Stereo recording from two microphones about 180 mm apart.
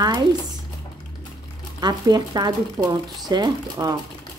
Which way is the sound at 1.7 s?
20° right (ahead or behind).